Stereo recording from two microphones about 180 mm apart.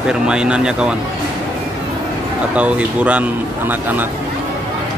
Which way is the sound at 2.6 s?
5° right (ahead or behind).